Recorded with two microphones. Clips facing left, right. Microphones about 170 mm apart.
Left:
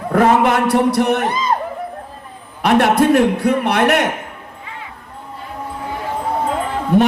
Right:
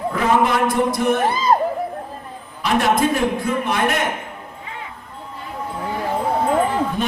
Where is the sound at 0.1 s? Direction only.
60° left (ahead or behind).